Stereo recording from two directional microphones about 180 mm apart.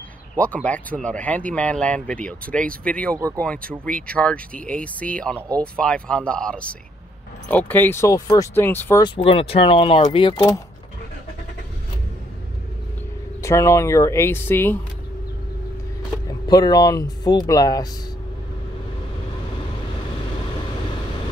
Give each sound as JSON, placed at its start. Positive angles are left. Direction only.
{"t": 0.4, "sound": "speech", "side_deg": 10}
{"t": 9.0, "sound": "speech", "side_deg": 30}
{"t": 13.4, "sound": "speech", "side_deg": 15}
{"t": 16.3, "sound": "speech", "side_deg": 20}